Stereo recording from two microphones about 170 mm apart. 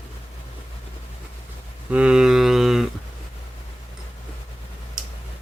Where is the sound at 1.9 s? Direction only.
5° right (ahead or behind).